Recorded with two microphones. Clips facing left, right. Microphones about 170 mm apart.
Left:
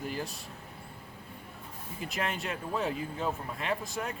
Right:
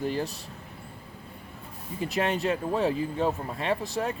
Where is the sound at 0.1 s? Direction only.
35° right (ahead or behind).